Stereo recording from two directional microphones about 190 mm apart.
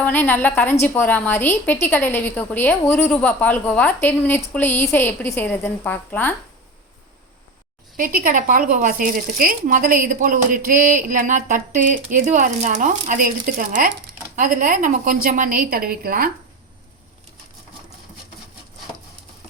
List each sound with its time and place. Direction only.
0.0 s a woman's voice: 10° left (ahead or behind)
7.9 s speech: 45° right (ahead or behind)